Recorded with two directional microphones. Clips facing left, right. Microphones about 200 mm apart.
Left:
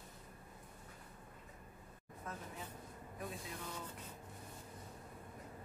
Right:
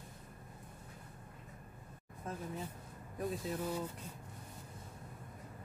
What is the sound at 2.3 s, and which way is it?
Speech, 30° right (ahead or behind).